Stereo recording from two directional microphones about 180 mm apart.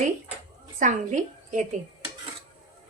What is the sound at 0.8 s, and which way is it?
Speech, 45° right (ahead or behind).